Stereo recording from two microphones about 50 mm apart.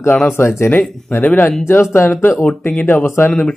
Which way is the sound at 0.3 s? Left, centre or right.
Left.